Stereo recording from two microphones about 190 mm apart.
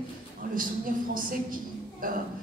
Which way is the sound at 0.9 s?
45° right (ahead or behind).